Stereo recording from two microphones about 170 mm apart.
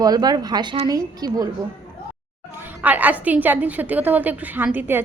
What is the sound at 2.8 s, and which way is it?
A woman's voice, 10° right (ahead or behind).